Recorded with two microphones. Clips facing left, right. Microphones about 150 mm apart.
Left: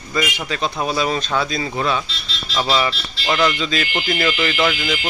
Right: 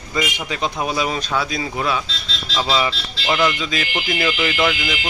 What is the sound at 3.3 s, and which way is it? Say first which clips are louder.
Speech: left 1 dB; 10° right (ahead or behind).